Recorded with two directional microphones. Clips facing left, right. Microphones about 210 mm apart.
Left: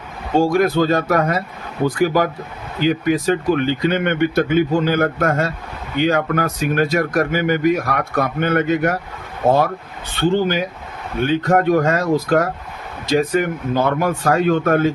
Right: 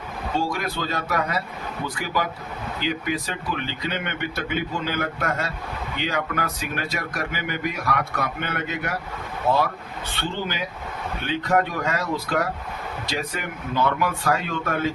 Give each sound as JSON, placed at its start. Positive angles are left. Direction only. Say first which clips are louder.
{"t": 0.3, "sound": "speech", "louder": "left 12 dB", "side_deg": 45}
{"t": 10.2, "sound": "speech", "louder": "left 12 dB", "side_deg": 45}